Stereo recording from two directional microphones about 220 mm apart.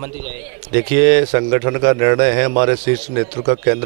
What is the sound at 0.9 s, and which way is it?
A man's voice, 15° right (ahead or behind).